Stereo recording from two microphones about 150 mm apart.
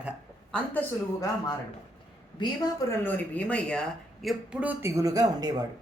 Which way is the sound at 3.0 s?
10° left (ahead or behind).